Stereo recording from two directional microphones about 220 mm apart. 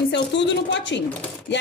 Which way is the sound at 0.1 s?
55° left (ahead or behind).